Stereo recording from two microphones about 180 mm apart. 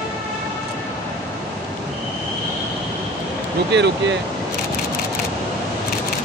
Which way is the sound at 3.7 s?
75° right (ahead or behind).